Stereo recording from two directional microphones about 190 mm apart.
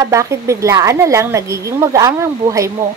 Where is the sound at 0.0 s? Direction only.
15° right (ahead or behind).